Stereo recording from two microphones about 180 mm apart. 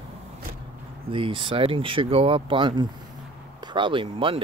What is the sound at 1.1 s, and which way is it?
Speech, 30° right (ahead or behind).